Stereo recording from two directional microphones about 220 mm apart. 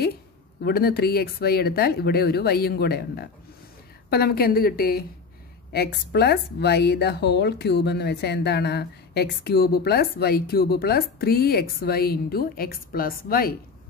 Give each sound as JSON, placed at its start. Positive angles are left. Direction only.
{"t": 0.6, "sound": "speech", "side_deg": 45}